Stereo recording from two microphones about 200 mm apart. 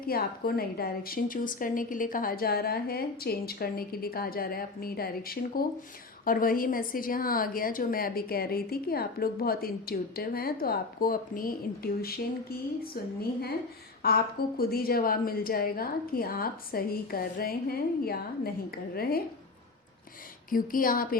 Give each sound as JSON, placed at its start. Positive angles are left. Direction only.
{"t": 0.0, "sound": "a woman's voice", "side_deg": 50}
{"t": 14.0, "sound": "a woman's voice", "side_deg": 50}
{"t": 20.5, "sound": "a woman's voice", "side_deg": 45}